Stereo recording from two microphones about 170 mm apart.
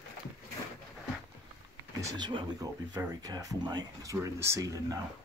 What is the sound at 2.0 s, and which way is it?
Speech, 25° right (ahead or behind).